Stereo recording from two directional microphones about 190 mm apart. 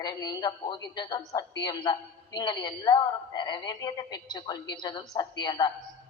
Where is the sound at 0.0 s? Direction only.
20° left (ahead or behind).